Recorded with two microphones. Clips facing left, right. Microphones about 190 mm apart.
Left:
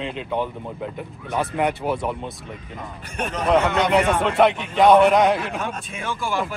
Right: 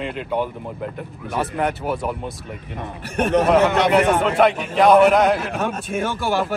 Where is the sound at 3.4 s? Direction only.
5° right (ahead or behind).